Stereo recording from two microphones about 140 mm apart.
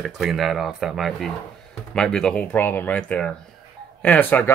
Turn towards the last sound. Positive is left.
turn(degrees=15)  # may be behind; listen again after turning